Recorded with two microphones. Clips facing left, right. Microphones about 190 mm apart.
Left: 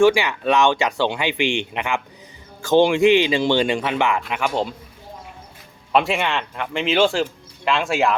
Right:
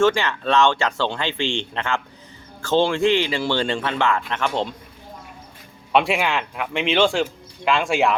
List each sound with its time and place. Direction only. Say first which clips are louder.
0.0 s speech: left 3 dB; 15° left (ahead or behind)
5.9 s speech: even; centre (ahead or behind)